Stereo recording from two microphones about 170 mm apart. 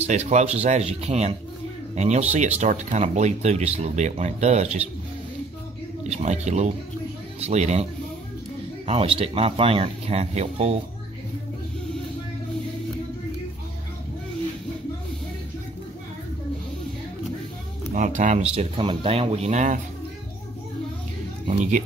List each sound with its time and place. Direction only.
0.0 s speech: 40° right (ahead or behind)
6.0 s speech: 40° right (ahead or behind)
17.9 s speech: 50° right (ahead or behind)
21.5 s speech: 45° right (ahead or behind)